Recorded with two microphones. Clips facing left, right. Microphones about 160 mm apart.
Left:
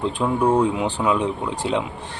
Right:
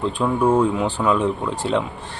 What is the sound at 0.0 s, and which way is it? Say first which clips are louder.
Speech: right 1 dB; 15° left (ahead or behind).